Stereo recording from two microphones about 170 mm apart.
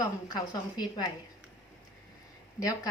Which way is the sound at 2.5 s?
20° left (ahead or behind).